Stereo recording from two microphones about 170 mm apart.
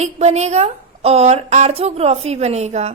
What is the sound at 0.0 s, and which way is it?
A woman's voice, 40° right (ahead or behind).